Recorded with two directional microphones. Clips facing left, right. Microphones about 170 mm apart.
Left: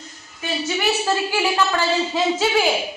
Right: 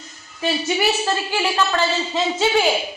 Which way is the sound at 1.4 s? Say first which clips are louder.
Even; 10° left (ahead or behind).